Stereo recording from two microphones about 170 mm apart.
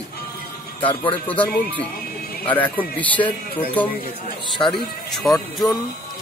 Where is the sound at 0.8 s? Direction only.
30° left (ahead or behind).